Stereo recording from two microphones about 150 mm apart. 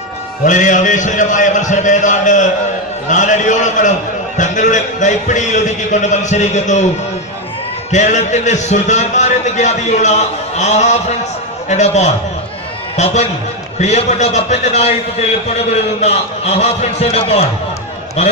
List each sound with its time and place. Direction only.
0.4 s a man's voice: 55° left (ahead or behind)
7.9 s a man's voice: 50° left (ahead or behind)